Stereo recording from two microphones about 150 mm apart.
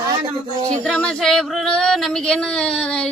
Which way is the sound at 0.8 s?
5° left (ahead or behind).